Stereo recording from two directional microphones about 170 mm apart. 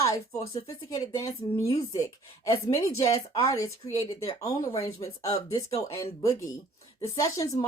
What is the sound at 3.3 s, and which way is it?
Speech, 20° left (ahead or behind).